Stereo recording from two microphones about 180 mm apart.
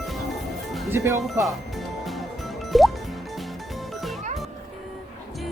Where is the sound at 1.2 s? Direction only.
Centre (ahead or behind).